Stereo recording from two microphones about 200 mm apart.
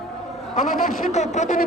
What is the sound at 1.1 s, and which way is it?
Speech, 35° left (ahead or behind).